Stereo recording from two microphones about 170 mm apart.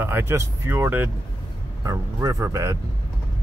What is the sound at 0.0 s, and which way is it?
Speech, 15° right (ahead or behind).